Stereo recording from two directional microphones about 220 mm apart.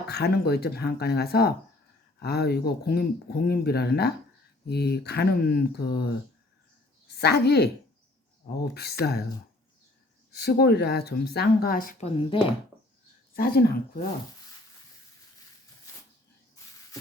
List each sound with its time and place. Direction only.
0.1 s speech: 45° left (ahead or behind)
8.7 s speech: 45° left (ahead or behind)
10.3 s speech: 45° left (ahead or behind); by 12.5 s 25° left (ahead or behind)
13.3 s speech: 45° left (ahead or behind)